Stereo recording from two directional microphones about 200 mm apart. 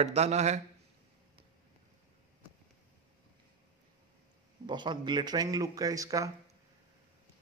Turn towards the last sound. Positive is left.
turn(degrees=-15)  # may be behind; listen again after turning